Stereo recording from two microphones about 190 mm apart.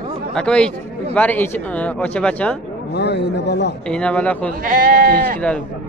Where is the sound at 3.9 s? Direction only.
5° left (ahead or behind).